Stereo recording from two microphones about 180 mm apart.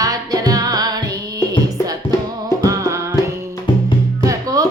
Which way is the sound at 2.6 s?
20° right (ahead or behind).